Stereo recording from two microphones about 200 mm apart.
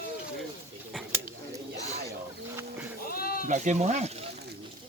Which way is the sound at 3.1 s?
45° left (ahead or behind).